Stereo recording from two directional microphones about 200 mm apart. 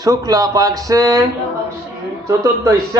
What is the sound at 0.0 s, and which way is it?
Speech, 20° right (ahead or behind).